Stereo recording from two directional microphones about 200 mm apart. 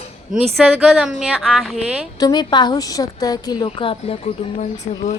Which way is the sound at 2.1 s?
20° left (ahead or behind).